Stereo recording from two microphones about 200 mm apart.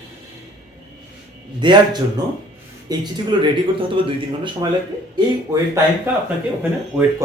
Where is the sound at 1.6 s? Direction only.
20° right (ahead or behind).